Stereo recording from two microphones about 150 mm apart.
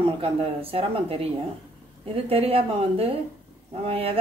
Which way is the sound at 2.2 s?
40° right (ahead or behind).